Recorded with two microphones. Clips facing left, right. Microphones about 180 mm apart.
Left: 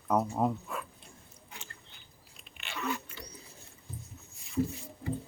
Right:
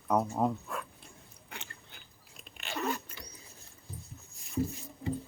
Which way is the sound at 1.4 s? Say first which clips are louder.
Right 3 dB; 65° right (ahead or behind).